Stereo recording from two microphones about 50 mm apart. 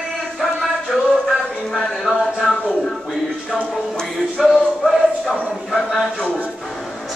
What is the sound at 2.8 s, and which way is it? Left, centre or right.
Music, centre.